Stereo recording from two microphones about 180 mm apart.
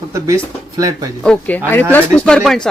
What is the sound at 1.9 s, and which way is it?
Speech, 5° left (ahead or behind).